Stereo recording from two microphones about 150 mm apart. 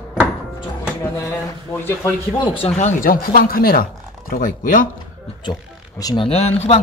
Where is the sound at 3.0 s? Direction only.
75° left (ahead or behind).